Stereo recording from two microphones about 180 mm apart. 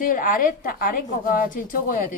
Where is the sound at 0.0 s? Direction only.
50° left (ahead or behind).